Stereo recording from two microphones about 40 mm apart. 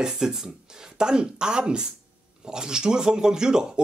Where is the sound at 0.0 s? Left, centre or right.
Centre.